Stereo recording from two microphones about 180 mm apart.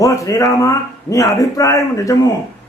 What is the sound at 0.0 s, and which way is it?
A man's voice, 20° left (ahead or behind).